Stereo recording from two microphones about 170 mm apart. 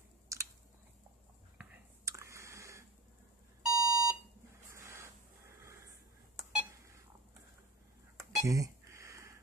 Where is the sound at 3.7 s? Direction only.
20° left (ahead or behind).